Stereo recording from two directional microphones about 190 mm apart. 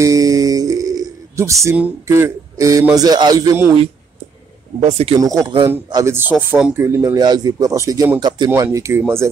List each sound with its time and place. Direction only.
0.0 s a sound: 20° right (ahead or behind)
4.8 s speech: 35° right (ahead or behind)
5.2 s a man's voice: 20° right (ahead or behind)